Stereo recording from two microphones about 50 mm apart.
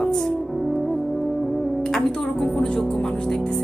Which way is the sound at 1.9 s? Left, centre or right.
Centre.